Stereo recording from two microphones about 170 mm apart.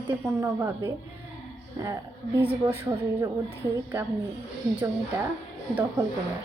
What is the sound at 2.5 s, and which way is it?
Speech, 10° right (ahead or behind).